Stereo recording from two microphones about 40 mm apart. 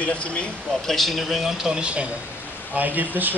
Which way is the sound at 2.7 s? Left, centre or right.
Right.